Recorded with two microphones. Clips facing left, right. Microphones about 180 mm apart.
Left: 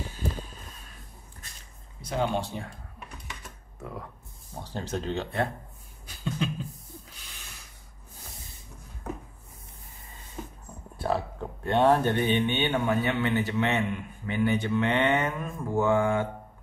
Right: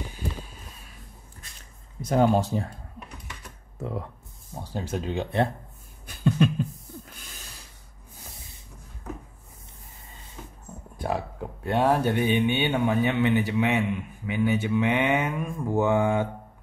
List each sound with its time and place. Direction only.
2.0 s speech: 45° right (ahead or behind)
3.8 s speech: 25° right (ahead or behind)
4.6 s speech: 10° right (ahead or behind)
6.0 s a sound: 60° right (ahead or behind)
7.1 s a sound: 45° right (ahead or behind)
11.0 s speech: 15° right (ahead or behind)